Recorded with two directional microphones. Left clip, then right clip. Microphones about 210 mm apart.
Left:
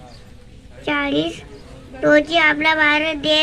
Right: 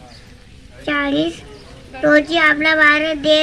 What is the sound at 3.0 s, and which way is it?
Music, 55° left (ahead or behind).